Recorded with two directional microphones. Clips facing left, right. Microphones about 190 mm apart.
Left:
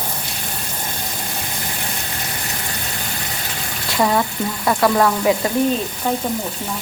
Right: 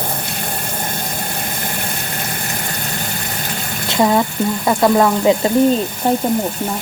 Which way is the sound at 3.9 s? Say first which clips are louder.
Right 3 dB; 20° right (ahead or behind).